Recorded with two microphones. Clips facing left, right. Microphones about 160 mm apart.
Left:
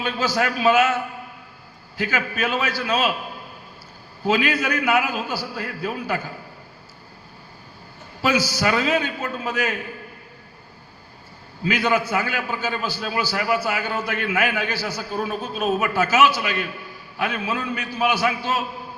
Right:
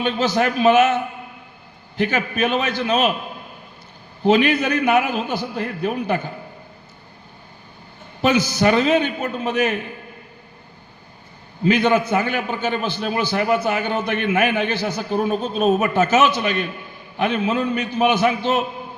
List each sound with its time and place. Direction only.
0.0 s a man's voice: 25° right (ahead or behind)
4.2 s a man's voice: 25° right (ahead or behind)
8.2 s a man's voice: 20° right (ahead or behind)
11.6 s a man's voice: 25° right (ahead or behind)